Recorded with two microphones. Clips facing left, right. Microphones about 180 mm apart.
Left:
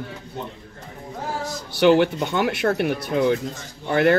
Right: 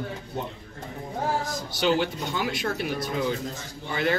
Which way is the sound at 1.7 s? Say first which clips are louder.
Left 8 dB; 60° left (ahead or behind).